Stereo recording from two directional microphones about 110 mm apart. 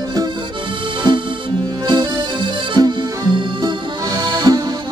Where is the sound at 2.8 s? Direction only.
35° right (ahead or behind).